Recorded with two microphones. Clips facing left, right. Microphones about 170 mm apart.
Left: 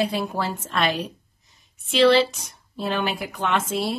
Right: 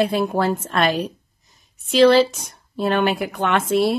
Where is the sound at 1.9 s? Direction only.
45° right (ahead or behind).